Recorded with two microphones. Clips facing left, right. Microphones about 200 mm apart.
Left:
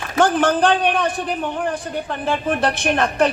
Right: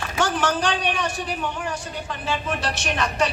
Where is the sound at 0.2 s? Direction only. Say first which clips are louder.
Left 7 dB; 55° left (ahead or behind).